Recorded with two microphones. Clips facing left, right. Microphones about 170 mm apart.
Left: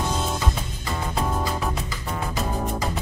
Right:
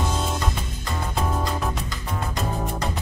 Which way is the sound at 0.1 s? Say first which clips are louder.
Even; centre (ahead or behind).